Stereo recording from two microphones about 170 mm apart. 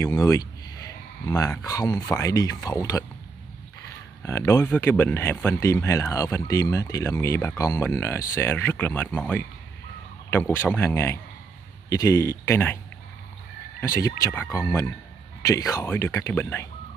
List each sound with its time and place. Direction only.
0.0 s speech: 15° left (ahead or behind)
4.2 s speech: 15° left (ahead or behind)
13.7 s speech: 15° left (ahead or behind)